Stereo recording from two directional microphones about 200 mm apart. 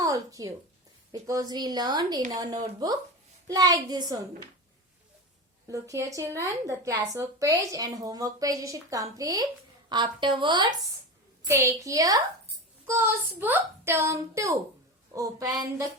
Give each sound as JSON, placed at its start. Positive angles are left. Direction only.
{"t": 0.0, "sound": "a woman's voice", "side_deg": -15}
{"t": 5.6, "sound": "a woman's voice", "side_deg": -15}